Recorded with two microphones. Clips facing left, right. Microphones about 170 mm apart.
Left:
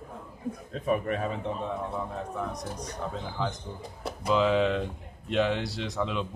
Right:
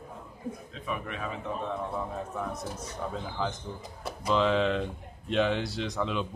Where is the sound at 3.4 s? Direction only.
5° right (ahead or behind).